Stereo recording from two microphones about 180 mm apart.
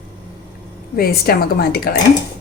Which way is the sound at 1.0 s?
55° left (ahead or behind).